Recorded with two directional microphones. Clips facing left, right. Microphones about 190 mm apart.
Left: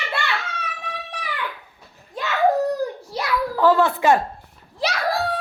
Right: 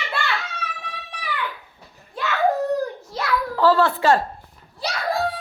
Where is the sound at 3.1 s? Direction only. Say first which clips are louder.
Left 1 dB; 15° left (ahead or behind).